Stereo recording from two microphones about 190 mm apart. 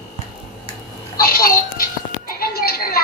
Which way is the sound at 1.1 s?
50° left (ahead or behind).